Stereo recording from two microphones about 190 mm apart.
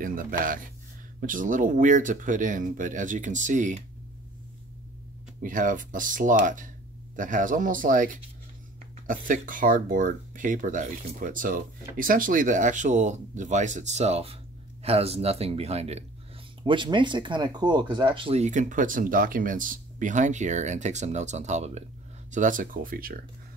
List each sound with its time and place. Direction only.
0.0 s speech: 45° right (ahead or behind)
5.4 s speech: 45° right (ahead or behind)